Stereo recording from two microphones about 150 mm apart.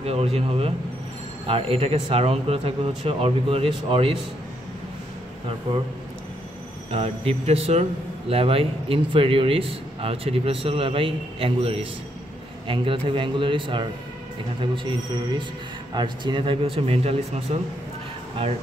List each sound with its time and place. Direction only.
0.0 s speech: 45° right (ahead or behind)
6.9 s speech: 40° right (ahead or behind)